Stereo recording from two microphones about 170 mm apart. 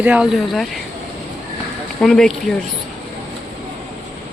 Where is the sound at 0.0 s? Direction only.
5° right (ahead or behind).